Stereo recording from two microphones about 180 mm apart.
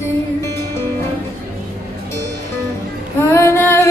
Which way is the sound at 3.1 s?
15° left (ahead or behind).